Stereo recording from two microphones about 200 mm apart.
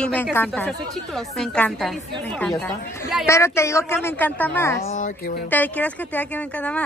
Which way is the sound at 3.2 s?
15° left (ahead or behind).